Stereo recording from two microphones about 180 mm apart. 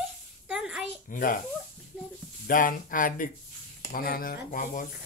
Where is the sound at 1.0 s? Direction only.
50° left (ahead or behind).